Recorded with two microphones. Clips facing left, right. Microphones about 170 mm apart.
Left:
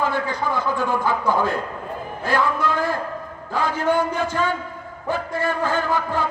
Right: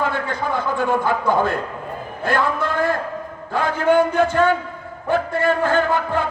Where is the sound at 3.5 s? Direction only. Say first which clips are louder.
Right 4 dB; 55° right (ahead or behind).